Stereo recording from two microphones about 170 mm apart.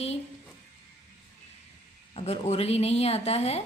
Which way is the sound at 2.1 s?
40° left (ahead or behind).